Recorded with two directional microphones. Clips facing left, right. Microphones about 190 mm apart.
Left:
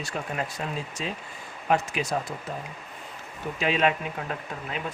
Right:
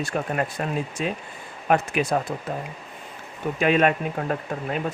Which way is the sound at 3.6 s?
55° right (ahead or behind).